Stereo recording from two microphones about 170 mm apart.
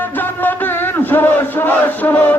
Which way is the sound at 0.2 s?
10° left (ahead or behind).